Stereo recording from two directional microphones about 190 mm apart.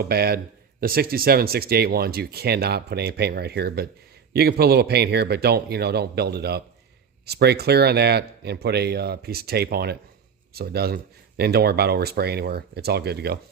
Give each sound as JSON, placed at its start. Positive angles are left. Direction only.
{"t": 0.0, "sound": "speech", "side_deg": -55}